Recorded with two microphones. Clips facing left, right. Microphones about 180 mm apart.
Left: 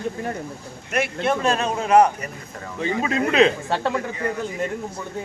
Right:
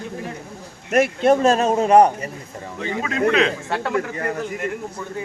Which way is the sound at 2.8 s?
30° left (ahead or behind).